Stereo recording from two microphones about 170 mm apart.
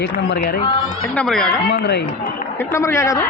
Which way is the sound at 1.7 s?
80° left.